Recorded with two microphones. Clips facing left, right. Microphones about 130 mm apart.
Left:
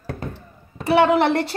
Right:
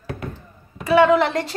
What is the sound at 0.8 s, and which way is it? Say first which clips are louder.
Speech: right 1 dB; 65° left (ahead or behind).